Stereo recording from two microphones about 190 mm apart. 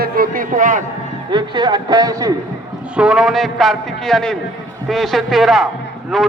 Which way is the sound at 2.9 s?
5° right (ahead or behind).